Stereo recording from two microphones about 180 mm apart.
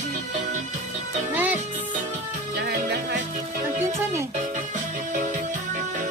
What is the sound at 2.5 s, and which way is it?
Music, 70° right (ahead or behind).